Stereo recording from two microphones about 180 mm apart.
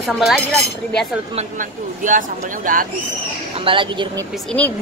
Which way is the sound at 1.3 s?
45° right (ahead or behind).